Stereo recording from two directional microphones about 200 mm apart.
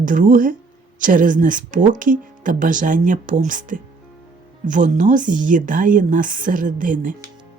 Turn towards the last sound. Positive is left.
turn(degrees=-40)  # may be behind; listen again after turning